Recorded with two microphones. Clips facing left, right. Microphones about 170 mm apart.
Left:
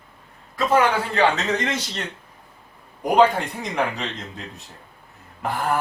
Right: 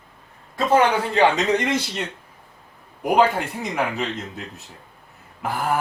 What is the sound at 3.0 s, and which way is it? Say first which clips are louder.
Speech: left 1 dB; 5° right (ahead or behind).